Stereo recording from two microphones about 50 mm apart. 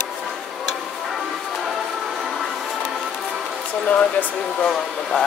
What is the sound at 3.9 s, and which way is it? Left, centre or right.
Speech, left.